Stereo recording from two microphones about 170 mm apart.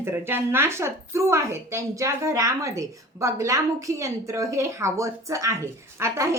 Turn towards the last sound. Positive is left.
turn(degrees=-15)  # may be behind; listen again after turning